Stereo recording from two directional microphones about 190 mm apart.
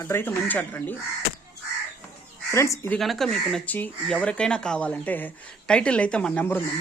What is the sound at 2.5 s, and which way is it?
Speech, 15° left (ahead or behind).